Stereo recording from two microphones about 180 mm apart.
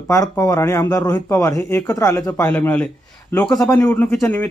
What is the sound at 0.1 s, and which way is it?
A man's voice, 15° left (ahead or behind).